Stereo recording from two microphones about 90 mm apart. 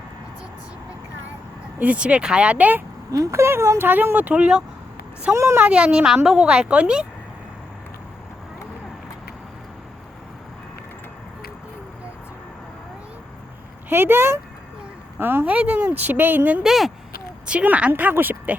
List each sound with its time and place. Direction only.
1.8 s a woman's voice: 15° right (ahead or behind)
3.1 s speech: 40° right (ahead or behind); by 4.6 s 10° right (ahead or behind)
5.3 s speech: 30° right (ahead or behind)
5.6 s a woman's voice: 10° right (ahead or behind)
13.9 s speech: 25° right (ahead or behind)
16.6 s speech: centre (ahead or behind)
17.4 s a woman's voice: 15° right (ahead or behind)